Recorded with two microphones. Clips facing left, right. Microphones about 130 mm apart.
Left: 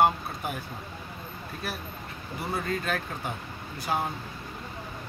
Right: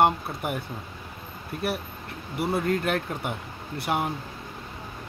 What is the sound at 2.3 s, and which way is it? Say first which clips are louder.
Speech: right 6 dB; 70° right (ahead or behind).